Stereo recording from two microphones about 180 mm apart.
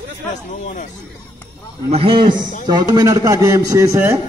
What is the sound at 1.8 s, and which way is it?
Speech, 30° right (ahead or behind).